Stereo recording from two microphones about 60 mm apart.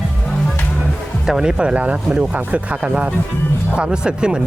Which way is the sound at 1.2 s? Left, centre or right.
Centre.